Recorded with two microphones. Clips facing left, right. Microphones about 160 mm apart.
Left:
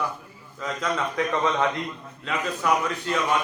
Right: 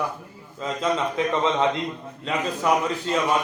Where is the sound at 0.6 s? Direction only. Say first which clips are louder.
Right 3 dB; 25° right (ahead or behind).